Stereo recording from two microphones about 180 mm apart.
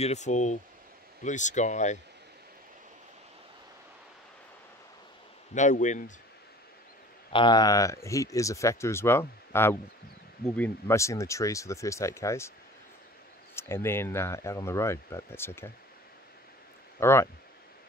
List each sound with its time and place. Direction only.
0.0 s speech: 40° left (ahead or behind)
5.5 s speech: 40° left (ahead or behind)
7.3 s speech: 25° left (ahead or behind)
13.6 s speech: 15° left (ahead or behind)
17.0 s speech: 15° left (ahead or behind)